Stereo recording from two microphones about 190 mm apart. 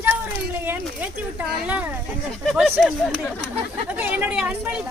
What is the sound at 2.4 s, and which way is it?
Speech, centre (ahead or behind).